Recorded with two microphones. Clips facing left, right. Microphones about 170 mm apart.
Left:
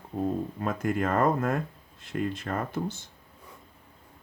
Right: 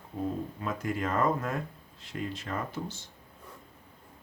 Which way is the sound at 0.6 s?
50° left (ahead or behind).